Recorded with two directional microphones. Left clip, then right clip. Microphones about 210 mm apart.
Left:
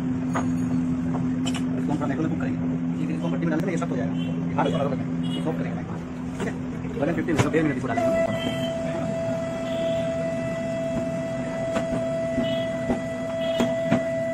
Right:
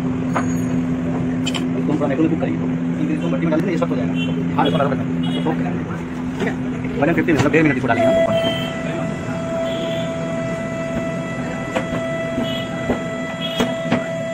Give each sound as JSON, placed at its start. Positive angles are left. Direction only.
{"t": 7.2, "sound": "speech", "side_deg": -20}